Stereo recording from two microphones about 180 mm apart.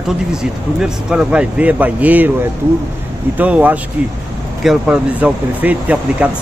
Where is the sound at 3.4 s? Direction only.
10° right (ahead or behind).